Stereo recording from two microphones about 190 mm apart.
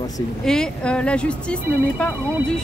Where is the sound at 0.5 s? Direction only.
5° left (ahead or behind).